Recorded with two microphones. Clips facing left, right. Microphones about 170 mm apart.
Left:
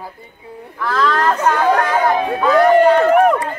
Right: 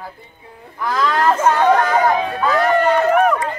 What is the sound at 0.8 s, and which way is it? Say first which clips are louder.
Speech: even; 10° right (ahead or behind).